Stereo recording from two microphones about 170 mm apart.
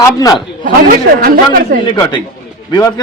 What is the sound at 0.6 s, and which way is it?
A man's voice, 55° right (ahead or behind).